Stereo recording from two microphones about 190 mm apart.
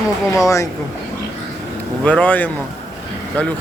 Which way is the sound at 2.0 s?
5° left (ahead or behind).